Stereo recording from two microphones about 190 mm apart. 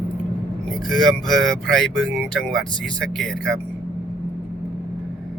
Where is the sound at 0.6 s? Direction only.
Centre (ahead or behind).